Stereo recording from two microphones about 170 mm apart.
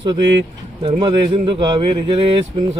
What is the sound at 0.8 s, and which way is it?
A man's voice, 30° right (ahead or behind).